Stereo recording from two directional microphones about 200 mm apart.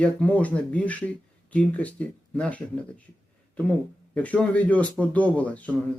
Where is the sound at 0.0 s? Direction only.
5° left (ahead or behind).